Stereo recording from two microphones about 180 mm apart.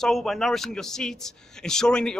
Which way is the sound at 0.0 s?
Centre (ahead or behind).